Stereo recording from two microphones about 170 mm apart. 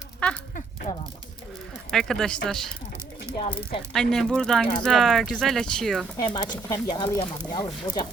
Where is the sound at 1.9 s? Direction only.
5° left (ahead or behind).